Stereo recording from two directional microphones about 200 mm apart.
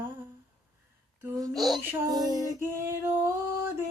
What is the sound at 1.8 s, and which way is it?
Music, 20° right (ahead or behind).